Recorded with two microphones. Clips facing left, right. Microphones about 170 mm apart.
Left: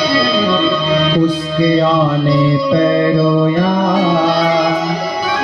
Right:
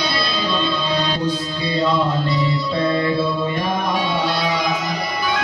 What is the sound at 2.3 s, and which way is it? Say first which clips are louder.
Music: left 9 dB; 85° left.